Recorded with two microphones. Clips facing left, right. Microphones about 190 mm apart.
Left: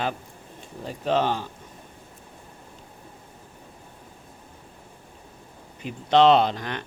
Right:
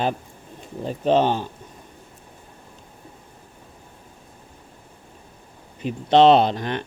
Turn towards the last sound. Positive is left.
turn(degrees=-20)  # may be behind; listen again after turning